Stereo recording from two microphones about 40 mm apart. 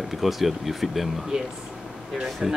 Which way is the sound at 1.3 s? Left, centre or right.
Right.